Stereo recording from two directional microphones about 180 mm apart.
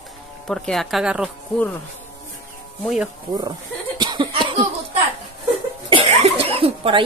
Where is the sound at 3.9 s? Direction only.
25° right (ahead or behind).